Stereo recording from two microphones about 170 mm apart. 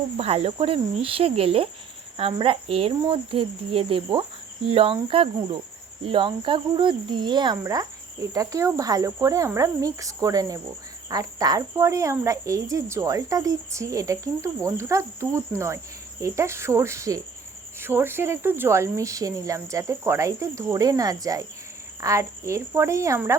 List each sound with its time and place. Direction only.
0.2 s speech: 35° right (ahead or behind)
6.1 s cricket: 30° right (ahead or behind)
16.2 s speech: 15° right (ahead or behind)